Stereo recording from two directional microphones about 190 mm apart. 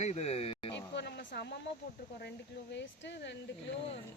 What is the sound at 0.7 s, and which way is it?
Speech, 65° left (ahead or behind).